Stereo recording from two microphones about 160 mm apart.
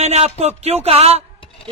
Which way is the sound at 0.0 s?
40° right (ahead or behind).